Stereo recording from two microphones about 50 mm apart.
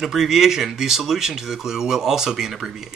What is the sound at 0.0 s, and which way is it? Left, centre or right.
Speech, centre.